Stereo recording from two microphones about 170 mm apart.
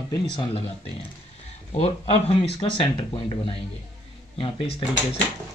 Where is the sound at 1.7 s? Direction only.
35° left (ahead or behind).